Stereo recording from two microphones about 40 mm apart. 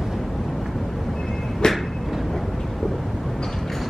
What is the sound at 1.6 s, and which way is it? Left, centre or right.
Train, centre.